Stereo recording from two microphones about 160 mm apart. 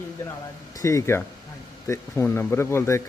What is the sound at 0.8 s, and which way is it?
Speech, 20° left (ahead or behind).